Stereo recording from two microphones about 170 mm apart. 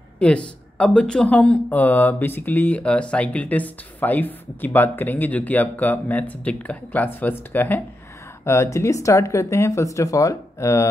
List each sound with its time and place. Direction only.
0.2 s speech: 5° left (ahead or behind)